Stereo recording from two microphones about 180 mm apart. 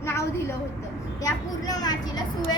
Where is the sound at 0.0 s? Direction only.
15° left (ahead or behind).